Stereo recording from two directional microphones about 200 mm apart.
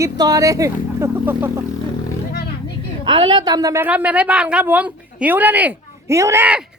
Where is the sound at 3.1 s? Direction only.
25° right (ahead or behind).